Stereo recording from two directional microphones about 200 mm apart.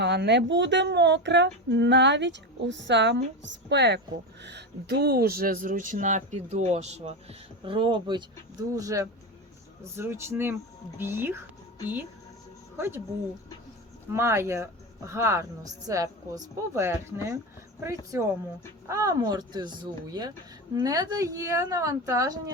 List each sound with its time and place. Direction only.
0.0 s speech: 60° right (ahead or behind); by 11.3 s 10° right (ahead or behind)
12.7 s speech: 10° right (ahead or behind)
14.1 s speech: 15° right (ahead or behind)